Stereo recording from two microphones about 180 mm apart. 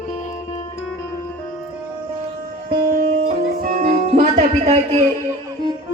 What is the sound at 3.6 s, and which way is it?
Music, 50° right (ahead or behind).